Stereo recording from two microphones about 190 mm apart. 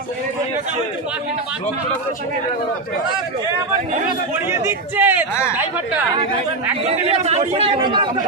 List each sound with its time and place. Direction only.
4.5 s a man's voice: 10° right (ahead or behind)
6.9 s speech: 35° right (ahead or behind)